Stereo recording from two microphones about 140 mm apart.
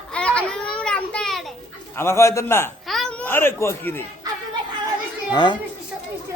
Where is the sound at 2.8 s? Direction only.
Centre (ahead or behind).